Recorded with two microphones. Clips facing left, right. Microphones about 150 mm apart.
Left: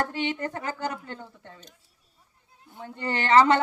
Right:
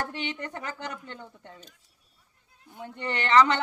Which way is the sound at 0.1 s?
30° left (ahead or behind).